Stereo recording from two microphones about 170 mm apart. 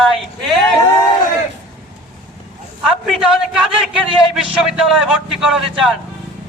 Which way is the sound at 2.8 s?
Centre (ahead or behind).